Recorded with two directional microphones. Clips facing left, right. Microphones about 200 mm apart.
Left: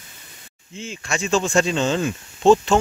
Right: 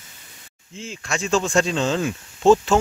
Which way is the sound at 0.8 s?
Centre (ahead or behind).